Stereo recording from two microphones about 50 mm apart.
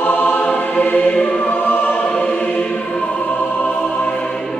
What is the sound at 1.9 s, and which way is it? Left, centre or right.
Choir, left.